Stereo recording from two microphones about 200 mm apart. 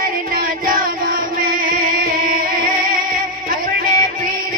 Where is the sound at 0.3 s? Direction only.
45° right (ahead or behind).